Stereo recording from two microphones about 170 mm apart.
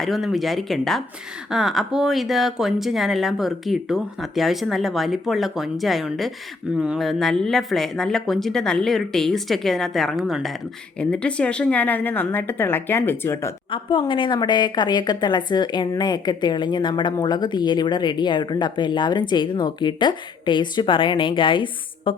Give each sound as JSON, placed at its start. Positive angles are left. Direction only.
{"t": 0.0, "sound": "a woman's voice", "side_deg": 0}
{"t": 13.7, "sound": "a woman's voice", "side_deg": 30}